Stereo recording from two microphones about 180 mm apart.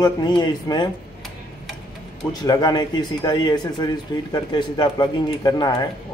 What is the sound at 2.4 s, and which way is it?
Speech, 20° left (ahead or behind).